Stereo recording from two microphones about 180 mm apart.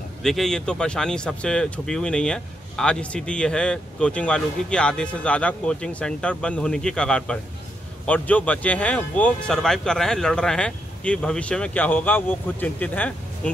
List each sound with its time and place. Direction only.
0.2 s speech: centre (ahead or behind)